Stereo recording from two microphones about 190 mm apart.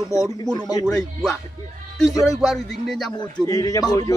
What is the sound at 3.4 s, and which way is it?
Speech, 20° left (ahead or behind).